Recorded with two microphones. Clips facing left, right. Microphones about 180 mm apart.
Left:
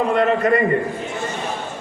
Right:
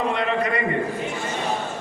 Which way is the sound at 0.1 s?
45° left (ahead or behind).